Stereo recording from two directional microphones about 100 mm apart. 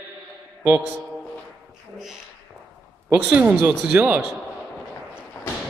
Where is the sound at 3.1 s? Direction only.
10° right (ahead or behind).